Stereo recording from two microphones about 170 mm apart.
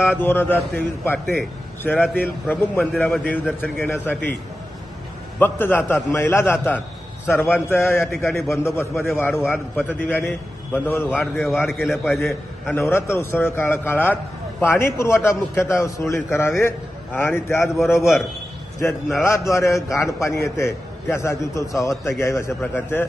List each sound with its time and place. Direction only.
0.2 s a man's voice: 10° left (ahead or behind)
5.4 s a man's voice: 10° left (ahead or behind)
11.2 s a man's voice: centre (ahead or behind)
11.8 s a man's voice: 10° left (ahead or behind)
19.2 s a man's voice: 15° left (ahead or behind)